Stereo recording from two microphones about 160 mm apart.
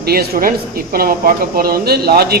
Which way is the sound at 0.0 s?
75° right (ahead or behind).